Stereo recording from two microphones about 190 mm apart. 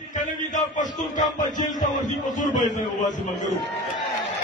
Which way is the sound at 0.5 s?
40° left (ahead or behind).